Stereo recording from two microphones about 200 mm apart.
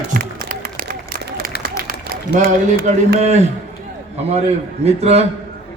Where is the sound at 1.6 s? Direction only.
45° right (ahead or behind).